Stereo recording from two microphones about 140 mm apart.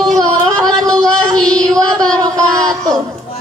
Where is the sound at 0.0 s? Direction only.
25° right (ahead or behind).